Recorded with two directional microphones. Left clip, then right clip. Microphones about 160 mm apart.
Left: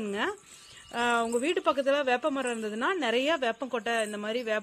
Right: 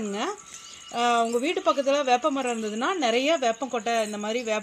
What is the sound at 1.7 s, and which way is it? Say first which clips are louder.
A woman's voice: right 6 dB; 30° left (ahead or behind).